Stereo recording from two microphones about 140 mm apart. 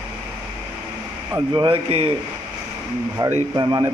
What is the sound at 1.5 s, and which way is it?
Speech, 40° right (ahead or behind).